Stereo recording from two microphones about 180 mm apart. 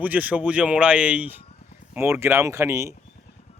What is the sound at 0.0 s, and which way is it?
Speech, 10° right (ahead or behind).